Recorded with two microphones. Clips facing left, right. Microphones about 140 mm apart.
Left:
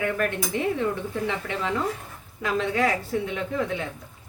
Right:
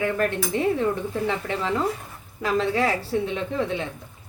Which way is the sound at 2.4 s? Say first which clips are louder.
Right 2 dB; 35° right (ahead or behind).